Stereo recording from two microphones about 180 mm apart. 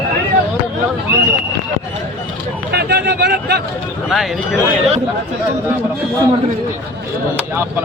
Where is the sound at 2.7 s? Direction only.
65° right (ahead or behind).